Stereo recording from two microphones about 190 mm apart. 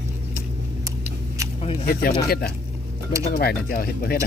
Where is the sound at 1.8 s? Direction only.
50° left (ahead or behind).